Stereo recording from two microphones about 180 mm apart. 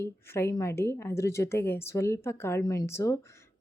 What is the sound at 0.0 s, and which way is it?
A woman's voice, 15° left (ahead or behind).